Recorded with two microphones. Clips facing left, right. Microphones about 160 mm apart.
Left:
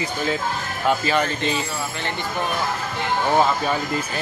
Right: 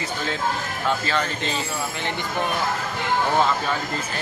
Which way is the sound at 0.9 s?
15° left (ahead or behind).